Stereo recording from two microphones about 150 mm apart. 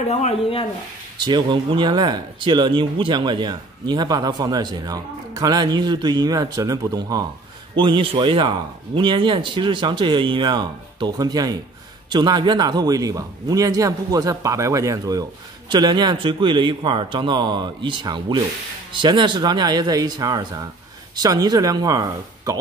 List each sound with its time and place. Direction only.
0.0 s speech: 45° left (ahead or behind)
1.2 s speech: 30° right (ahead or behind)